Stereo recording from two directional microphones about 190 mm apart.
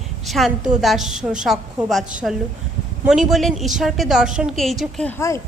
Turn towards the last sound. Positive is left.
turn(degrees=15)  # may be behind; listen again after turning